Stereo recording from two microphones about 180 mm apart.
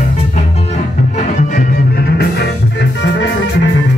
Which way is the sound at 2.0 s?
60° left (ahead or behind).